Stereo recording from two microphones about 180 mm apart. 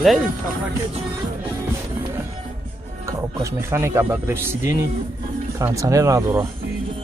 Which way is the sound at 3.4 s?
15° right (ahead or behind).